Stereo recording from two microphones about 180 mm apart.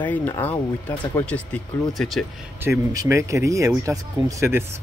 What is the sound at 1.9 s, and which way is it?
Speech, centre (ahead or behind).